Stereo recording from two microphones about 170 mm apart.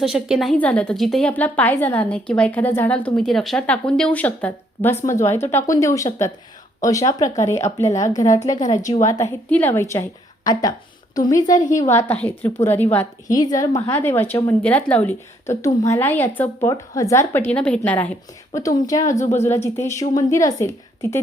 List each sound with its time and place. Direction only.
0.0 s a woman's voice: 5° right (ahead or behind); by 21.2 s 15° left (ahead or behind)